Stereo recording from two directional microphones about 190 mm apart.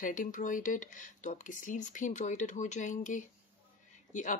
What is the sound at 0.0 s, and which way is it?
Speech, 45° left (ahead or behind).